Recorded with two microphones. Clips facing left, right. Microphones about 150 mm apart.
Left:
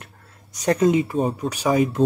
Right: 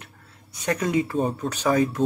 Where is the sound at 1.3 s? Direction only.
10° left (ahead or behind).